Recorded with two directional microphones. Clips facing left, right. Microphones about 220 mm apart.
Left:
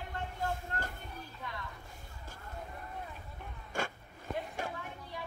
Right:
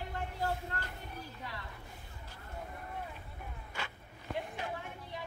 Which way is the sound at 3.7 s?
45° left (ahead or behind).